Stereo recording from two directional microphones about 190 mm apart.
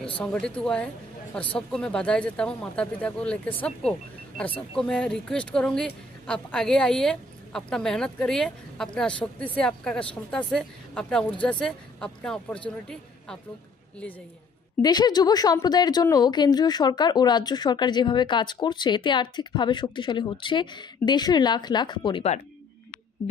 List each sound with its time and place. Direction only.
0.2 s a woman's voice: 5° left (ahead or behind)
14.8 s speech: 20° left (ahead or behind)